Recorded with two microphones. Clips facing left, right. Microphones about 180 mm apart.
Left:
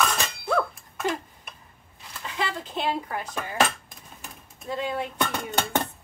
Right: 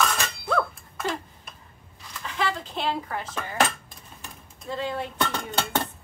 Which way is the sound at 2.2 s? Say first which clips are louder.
Right 2 dB; 20° left (ahead or behind).